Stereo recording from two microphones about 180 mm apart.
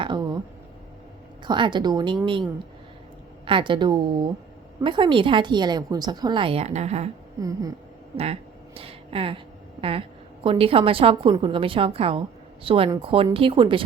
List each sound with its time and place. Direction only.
0.0 s a sound: 25° right (ahead or behind)
1.5 s a woman's voice: 25° right (ahead or behind)
7.4 s a woman's voice: 20° right (ahead or behind)
8.1 s speech: 35° right (ahead or behind)
10.4 s a woman's voice: 30° right (ahead or behind)